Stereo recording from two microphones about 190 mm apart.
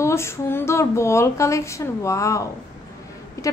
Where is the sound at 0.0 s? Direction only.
15° left (ahead or behind).